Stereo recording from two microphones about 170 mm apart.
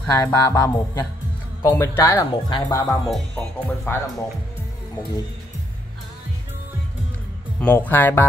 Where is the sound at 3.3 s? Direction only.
10° left (ahead or behind).